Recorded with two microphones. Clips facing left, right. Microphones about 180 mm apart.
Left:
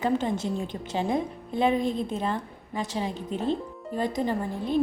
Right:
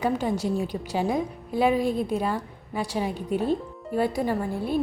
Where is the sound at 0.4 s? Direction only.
10° right (ahead or behind).